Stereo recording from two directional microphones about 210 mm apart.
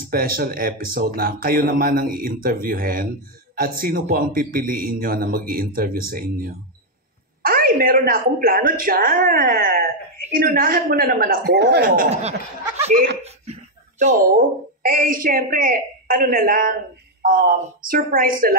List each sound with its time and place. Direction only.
0.1 s speech: 45° right (ahead or behind)
13.2 s a sound: 30° right (ahead or behind)
14.9 s a woman's voice: 40° right (ahead or behind)